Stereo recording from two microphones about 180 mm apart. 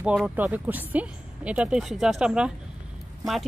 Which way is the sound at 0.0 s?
5° right (ahead or behind).